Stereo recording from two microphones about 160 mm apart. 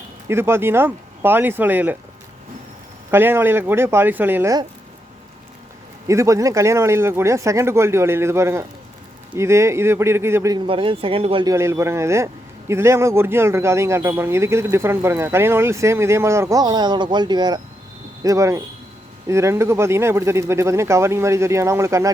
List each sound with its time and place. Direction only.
0.3 s a man's voice: 15° right (ahead or behind)
3.1 s a man's voice: 15° right (ahead or behind)
6.1 s a man's voice: 20° right (ahead or behind)
10.7 s speech: 35° right (ahead or behind)
11.4 s a man's voice: 15° right (ahead or behind)